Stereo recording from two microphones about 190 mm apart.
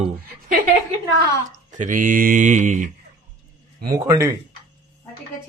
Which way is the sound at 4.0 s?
15° right (ahead or behind).